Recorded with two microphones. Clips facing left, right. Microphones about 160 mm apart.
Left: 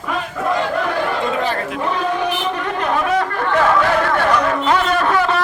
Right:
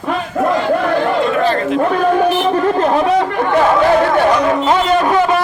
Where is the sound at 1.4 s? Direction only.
10° left (ahead or behind).